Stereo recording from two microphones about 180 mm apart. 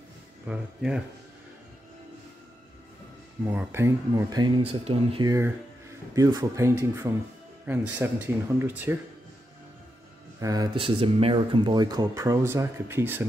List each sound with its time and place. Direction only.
0.5 s speech: 5° right (ahead or behind)
3.4 s speech: 15° right (ahead or behind)
4.6 s speech: 30° right (ahead or behind)
5.3 s speech: 15° right (ahead or behind)
10.4 s speech: 20° right (ahead or behind)